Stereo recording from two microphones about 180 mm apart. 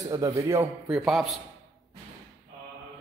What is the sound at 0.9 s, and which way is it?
Speech, 5° right (ahead or behind).